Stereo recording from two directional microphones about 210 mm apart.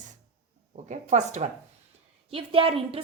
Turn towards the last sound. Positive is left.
turn(degrees=-25)  # may be behind; listen again after turning